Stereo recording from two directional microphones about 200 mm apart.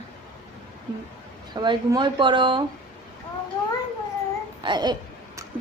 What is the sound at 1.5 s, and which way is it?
Speech, 20° right (ahead or behind).